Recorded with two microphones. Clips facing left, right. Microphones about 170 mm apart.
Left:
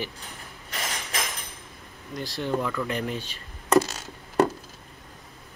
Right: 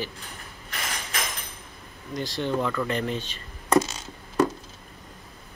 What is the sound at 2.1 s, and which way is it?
Speech, 5° left (ahead or behind).